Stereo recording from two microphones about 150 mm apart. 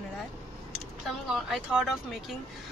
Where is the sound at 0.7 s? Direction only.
Centre (ahead or behind).